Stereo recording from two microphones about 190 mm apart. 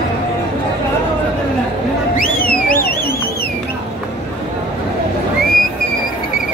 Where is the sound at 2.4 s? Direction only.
50° left (ahead or behind).